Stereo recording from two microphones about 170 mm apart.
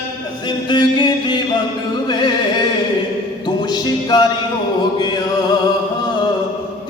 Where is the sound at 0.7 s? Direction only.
25° left (ahead or behind).